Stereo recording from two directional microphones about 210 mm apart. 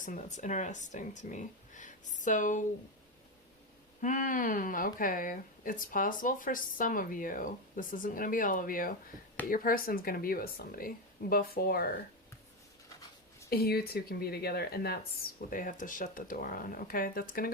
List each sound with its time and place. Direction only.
0.0 s speech: 35° left (ahead or behind)
4.0 s speech: 40° left (ahead or behind)
13.5 s speech: 45° left (ahead or behind)